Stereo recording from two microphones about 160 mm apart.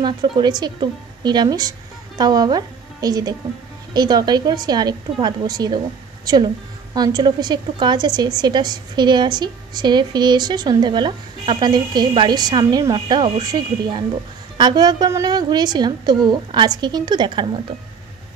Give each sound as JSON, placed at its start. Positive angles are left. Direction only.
{"t": 0.0, "sound": "a woman's voice", "side_deg": -25}